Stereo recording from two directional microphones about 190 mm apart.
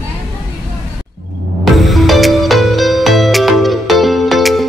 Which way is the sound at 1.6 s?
Centre (ahead or behind).